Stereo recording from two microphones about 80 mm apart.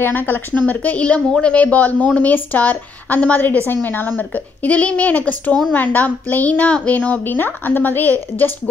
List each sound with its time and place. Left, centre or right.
0.0 s a woman's voice: left